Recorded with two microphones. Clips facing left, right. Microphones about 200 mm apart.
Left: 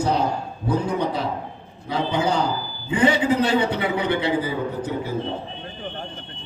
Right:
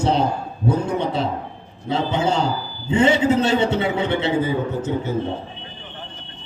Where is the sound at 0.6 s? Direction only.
25° right (ahead or behind).